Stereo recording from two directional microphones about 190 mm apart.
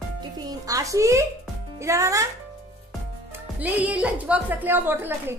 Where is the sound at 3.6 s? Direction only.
10° right (ahead or behind).